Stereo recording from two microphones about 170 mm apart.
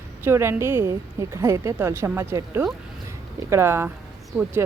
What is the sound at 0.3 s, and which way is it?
A woman's voice, 15° right (ahead or behind).